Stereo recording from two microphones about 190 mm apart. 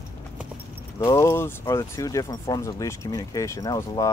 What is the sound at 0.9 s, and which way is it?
Speech, 15° left (ahead or behind).